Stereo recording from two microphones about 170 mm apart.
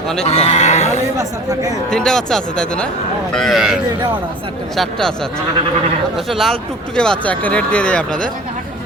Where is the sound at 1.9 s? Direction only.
5° left (ahead or behind).